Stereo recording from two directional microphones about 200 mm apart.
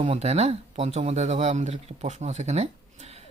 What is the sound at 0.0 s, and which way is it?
Speech, 30° right (ahead or behind).